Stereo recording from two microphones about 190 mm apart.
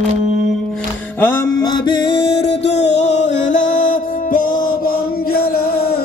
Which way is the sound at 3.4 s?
40° left (ahead or behind).